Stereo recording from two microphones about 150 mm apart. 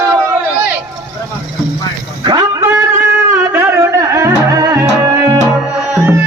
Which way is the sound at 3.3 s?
15° right (ahead or behind).